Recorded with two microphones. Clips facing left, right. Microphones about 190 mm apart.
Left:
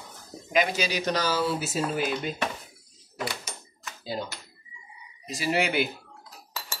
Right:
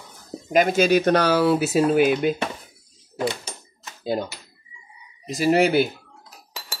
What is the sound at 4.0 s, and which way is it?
Speech, 55° right (ahead or behind).